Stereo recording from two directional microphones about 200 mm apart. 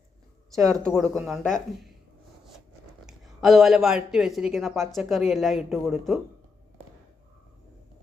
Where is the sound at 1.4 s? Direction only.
40° left (ahead or behind).